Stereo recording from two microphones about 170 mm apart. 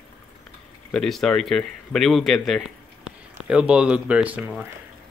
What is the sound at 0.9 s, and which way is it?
Speech, 5° left (ahead or behind).